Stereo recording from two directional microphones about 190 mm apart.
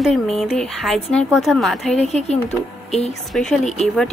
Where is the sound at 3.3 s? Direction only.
5° left (ahead or behind).